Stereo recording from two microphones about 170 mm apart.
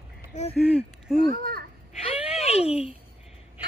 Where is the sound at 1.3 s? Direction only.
60° right (ahead or behind).